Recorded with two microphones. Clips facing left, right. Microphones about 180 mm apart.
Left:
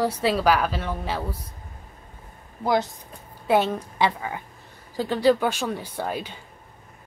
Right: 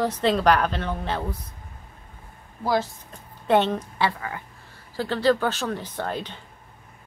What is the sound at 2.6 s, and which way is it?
Speech, 20° left (ahead or behind).